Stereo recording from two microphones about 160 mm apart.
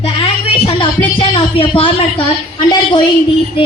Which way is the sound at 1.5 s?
35° left (ahead or behind).